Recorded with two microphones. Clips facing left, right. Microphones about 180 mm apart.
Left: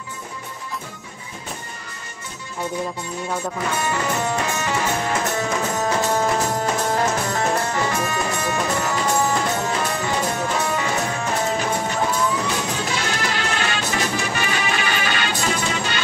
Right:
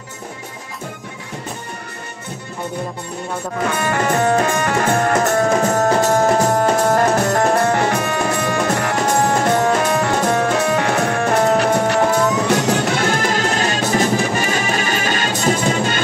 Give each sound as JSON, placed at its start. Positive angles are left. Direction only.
{"t": 3.7, "sound": "music", "side_deg": -60}